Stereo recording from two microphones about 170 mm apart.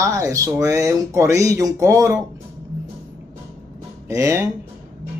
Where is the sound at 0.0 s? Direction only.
20° right (ahead or behind).